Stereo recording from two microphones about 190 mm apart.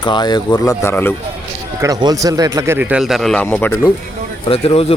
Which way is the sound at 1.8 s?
20° right (ahead or behind).